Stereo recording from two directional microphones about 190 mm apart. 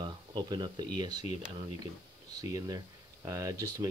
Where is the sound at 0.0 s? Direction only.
25° right (ahead or behind).